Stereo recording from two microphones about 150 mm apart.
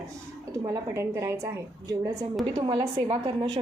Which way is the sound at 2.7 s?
35° right (ahead or behind).